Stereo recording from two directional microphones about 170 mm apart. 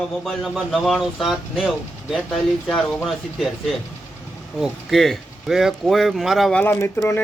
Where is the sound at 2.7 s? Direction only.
5° left (ahead or behind).